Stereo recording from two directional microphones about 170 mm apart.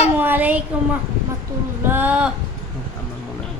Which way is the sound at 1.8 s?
10° right (ahead or behind).